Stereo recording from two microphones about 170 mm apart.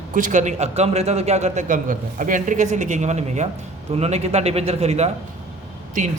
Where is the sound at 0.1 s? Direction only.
50° right (ahead or behind).